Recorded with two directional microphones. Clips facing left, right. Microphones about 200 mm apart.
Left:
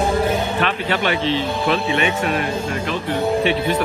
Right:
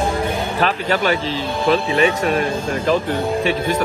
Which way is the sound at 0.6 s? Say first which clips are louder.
Right 2 dB; 40° right (ahead or behind).